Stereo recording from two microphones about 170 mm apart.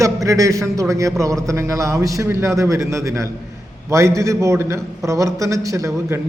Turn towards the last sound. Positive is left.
turn(degrees=-20)  # may be behind; listen again after turning